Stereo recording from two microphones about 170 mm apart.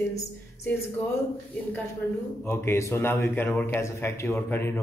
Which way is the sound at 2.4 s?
15° left (ahead or behind).